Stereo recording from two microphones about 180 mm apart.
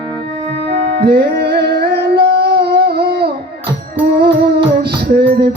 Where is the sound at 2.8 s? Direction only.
60° right (ahead or behind).